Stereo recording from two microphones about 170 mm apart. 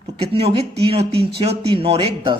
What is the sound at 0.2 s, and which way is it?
Speech, 35° right (ahead or behind).